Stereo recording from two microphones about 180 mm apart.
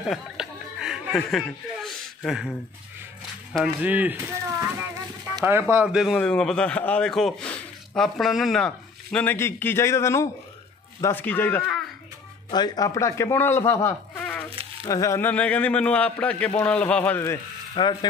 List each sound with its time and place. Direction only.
0.0 s a sound: 5° right (ahead or behind)
3.5 s a man's voice: 10° right (ahead or behind); by 11.6 s 10° left (ahead or behind)
12.4 s speech: 25° left (ahead or behind); by 14.5 s 5° left (ahead or behind)
14.9 s a man's voice: 15° left (ahead or behind)
17.8 s speech: 25° left (ahead or behind)